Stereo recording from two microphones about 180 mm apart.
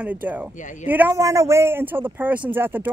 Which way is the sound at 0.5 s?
45° left (ahead or behind).